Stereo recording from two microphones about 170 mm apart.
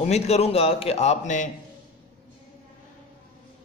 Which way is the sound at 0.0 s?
40° left (ahead or behind).